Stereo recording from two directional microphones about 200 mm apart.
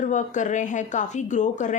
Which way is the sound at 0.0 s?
40° left (ahead or behind).